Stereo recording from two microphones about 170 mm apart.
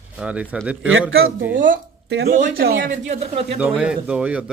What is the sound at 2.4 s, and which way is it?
Speech, 65° right (ahead or behind).